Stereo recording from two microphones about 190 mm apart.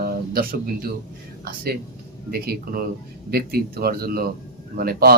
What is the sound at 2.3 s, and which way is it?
Speech, 55° right (ahead or behind).